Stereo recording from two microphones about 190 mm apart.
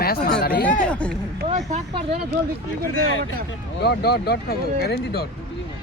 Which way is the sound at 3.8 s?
60° left (ahead or behind).